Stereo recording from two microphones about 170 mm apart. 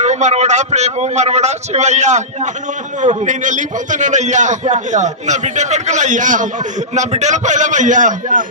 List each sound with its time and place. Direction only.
0.0 s a man's voice: 45° right (ahead or behind)